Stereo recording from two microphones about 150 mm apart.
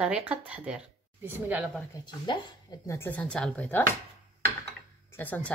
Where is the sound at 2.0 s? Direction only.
30° left (ahead or behind).